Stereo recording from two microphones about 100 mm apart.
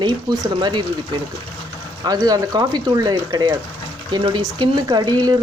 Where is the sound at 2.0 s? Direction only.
40° right (ahead or behind).